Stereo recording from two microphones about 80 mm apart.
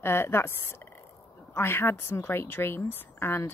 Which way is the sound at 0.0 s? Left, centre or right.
Left.